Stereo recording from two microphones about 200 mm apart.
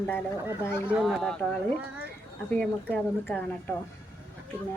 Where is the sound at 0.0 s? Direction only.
10° left (ahead or behind).